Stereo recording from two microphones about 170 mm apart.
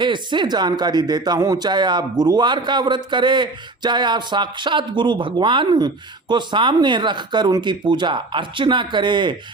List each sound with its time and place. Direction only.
0.0 s a man's voice: 25° right (ahead or behind)